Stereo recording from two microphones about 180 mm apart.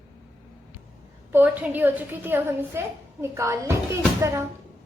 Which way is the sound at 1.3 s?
10° right (ahead or behind).